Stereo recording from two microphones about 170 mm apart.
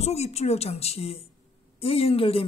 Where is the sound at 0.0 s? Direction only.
40° left (ahead or behind).